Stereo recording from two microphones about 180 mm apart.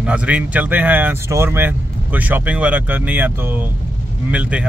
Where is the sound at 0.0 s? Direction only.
5° right (ahead or behind).